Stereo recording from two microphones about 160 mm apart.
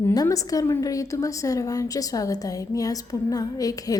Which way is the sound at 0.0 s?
20° left (ahead or behind).